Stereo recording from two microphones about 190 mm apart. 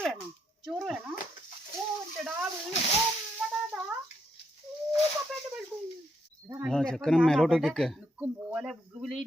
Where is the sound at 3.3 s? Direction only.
5° right (ahead or behind).